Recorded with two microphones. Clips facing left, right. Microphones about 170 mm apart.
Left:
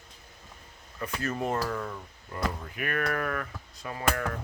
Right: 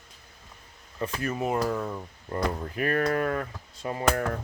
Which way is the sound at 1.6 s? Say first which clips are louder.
Right 4 dB; 20° right (ahead or behind).